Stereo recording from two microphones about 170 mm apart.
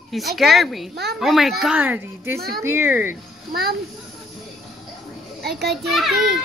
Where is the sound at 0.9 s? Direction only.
75° right (ahead or behind).